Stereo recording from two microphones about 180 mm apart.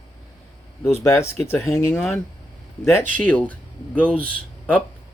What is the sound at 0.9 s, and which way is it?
Speech, 15° left (ahead or behind).